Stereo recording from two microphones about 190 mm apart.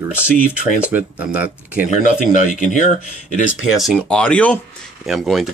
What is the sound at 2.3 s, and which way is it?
Speech, 40° left (ahead or behind).